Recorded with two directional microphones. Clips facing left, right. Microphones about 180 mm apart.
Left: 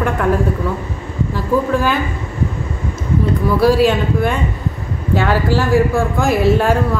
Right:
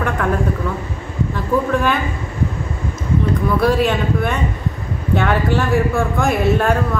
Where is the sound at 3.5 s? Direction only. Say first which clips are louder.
Left 4 dB; 5° left (ahead or behind).